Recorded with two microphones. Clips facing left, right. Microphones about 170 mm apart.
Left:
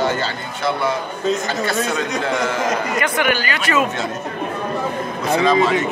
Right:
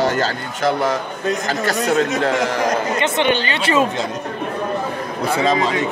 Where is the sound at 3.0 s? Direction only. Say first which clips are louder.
Right 2 dB; 25° right (ahead or behind).